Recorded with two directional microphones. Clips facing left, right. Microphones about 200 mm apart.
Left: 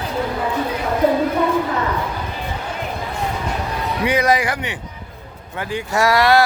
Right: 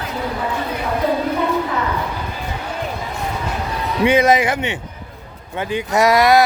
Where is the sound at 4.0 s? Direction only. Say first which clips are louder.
Right 4 dB; 25° right (ahead or behind).